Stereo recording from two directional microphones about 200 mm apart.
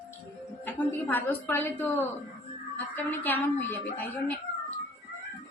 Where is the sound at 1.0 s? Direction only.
10° left (ahead or behind).